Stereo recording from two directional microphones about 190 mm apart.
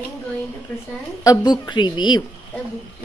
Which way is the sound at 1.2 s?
20° left (ahead or behind).